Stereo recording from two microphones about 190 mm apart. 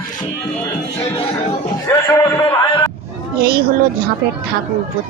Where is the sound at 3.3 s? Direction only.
55° right (ahead or behind).